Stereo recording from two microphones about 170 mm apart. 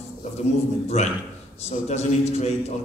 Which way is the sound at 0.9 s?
40° left (ahead or behind).